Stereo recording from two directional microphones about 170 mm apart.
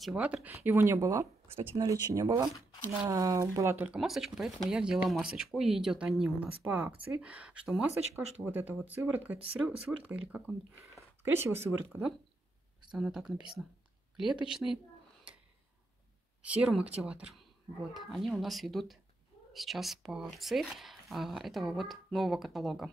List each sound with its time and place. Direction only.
0.0 s speech: 5° right (ahead or behind)
12.9 s speech: 5° right (ahead or behind)
16.4 s speech: 5° right (ahead or behind)